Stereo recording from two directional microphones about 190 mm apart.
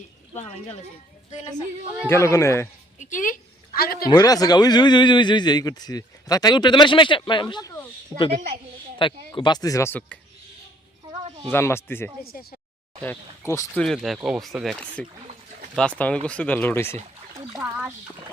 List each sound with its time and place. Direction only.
2.0 s speech: 15° left (ahead or behind)
3.0 s speech: 45° left (ahead or behind)
4.1 s a man's voice: 20° left (ahead or behind)
11.5 s speech: 15° left (ahead or behind)
12.2 s speech: 50° left (ahead or behind)
13.0 s speech: 10° left (ahead or behind)
13.8 s speech: centre (ahead or behind)
17.5 s speech: 10° right (ahead or behind)